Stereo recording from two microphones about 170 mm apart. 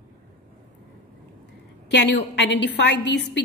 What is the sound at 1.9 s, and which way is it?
A woman's voice, 90° left.